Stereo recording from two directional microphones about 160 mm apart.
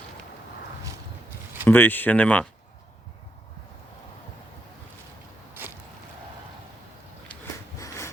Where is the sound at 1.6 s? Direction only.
10° left (ahead or behind).